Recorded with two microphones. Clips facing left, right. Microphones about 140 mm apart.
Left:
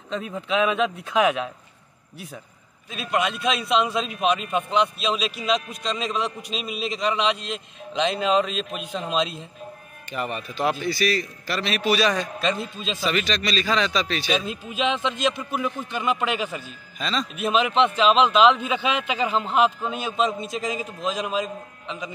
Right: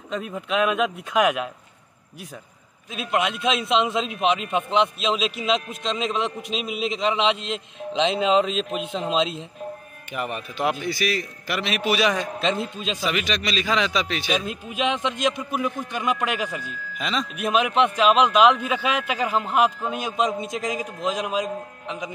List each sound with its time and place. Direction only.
0.1 s speech: centre (ahead or behind)
3.0 s a man's voice: 15° right (ahead or behind)
10.1 s a man's voice: 10° right (ahead or behind)
17.4 s a man's voice: 10° right (ahead or behind)